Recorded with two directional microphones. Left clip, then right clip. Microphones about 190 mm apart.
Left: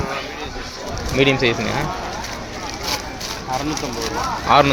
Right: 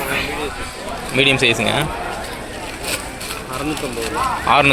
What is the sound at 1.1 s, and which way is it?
Speech, 5° left (ahead or behind).